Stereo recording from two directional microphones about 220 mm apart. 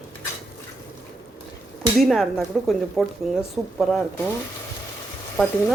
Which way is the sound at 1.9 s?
Centre (ahead or behind).